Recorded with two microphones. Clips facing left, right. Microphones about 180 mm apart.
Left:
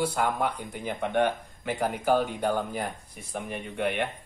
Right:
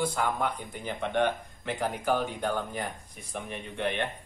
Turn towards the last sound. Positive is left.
turn(degrees=10)  # may be behind; listen again after turning